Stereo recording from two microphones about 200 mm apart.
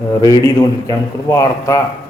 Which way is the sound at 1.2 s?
15° left (ahead or behind).